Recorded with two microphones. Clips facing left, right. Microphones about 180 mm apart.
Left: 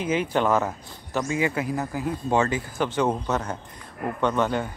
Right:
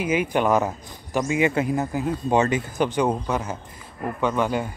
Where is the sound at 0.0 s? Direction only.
10° right (ahead or behind).